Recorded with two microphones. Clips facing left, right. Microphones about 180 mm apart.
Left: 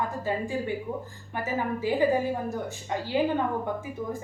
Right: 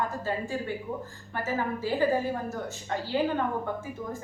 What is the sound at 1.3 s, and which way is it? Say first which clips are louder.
A woman's voice: left 1 dB; 15° left (ahead or behind).